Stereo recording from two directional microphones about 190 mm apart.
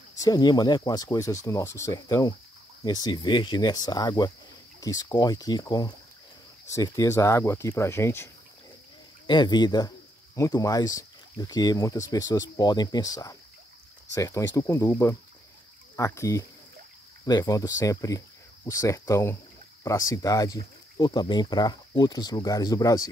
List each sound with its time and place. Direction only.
0.2 s speech: 20° left (ahead or behind)
9.3 s speech: 25° left (ahead or behind)